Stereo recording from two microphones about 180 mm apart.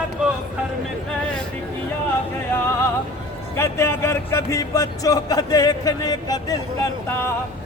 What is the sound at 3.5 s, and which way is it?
Speech, 15° left (ahead or behind).